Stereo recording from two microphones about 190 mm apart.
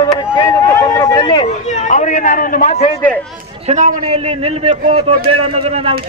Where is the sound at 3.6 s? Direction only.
35° right (ahead or behind).